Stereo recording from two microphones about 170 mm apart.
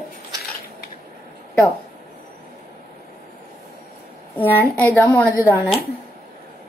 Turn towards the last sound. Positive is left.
turn(degrees=15)  # may be behind; listen again after turning